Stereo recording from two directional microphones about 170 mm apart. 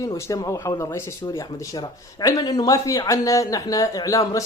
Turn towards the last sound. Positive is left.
turn(degrees=20)  # may be behind; listen again after turning